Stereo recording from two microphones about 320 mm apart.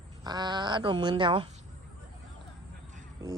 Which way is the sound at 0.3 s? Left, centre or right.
Centre.